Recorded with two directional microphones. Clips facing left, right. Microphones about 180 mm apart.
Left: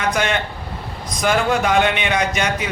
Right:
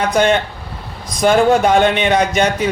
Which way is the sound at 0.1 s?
35° right (ahead or behind).